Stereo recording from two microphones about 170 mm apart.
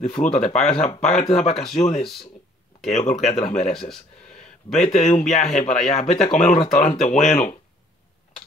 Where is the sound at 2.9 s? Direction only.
45° left (ahead or behind).